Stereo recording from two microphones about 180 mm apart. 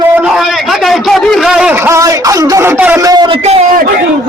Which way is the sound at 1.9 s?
20° right (ahead or behind).